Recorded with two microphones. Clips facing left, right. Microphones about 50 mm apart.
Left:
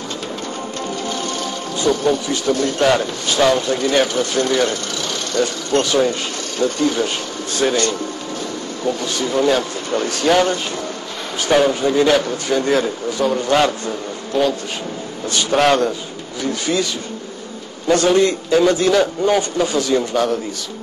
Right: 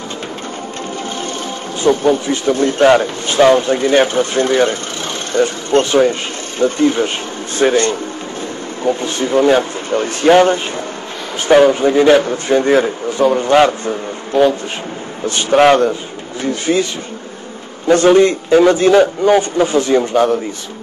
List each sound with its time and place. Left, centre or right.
1.8 s speech: right